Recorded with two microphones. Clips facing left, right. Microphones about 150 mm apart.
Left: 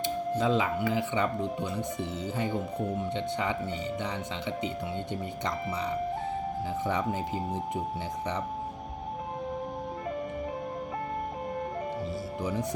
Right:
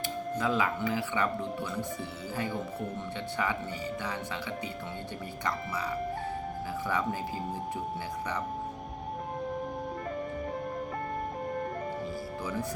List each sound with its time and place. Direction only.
0.0 s music: 20° left (ahead or behind)
0.8 s speech: 20° left (ahead or behind)
12.4 s speech: 20° left (ahead or behind)